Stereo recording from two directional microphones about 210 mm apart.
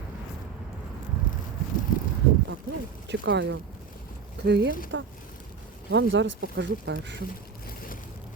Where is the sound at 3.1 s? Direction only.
55° right (ahead or behind).